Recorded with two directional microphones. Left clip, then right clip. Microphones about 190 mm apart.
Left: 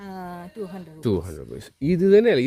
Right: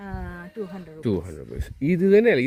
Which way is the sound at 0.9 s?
15° left (ahead or behind).